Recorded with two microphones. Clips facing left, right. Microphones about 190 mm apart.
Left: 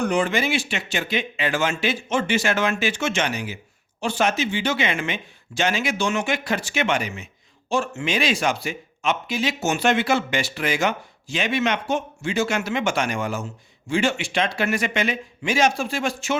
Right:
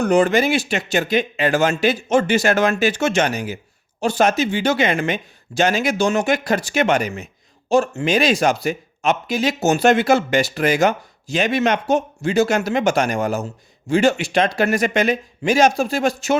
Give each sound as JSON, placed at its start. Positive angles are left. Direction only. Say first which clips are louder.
{"t": 0.0, "sound": "speech", "louder": "right 6 dB", "side_deg": -40}